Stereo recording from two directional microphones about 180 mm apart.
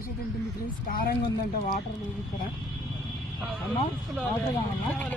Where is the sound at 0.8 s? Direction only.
50° left (ahead or behind).